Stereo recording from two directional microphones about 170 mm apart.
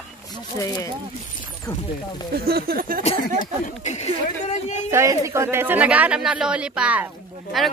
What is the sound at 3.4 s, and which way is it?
Speech, 45° left (ahead or behind).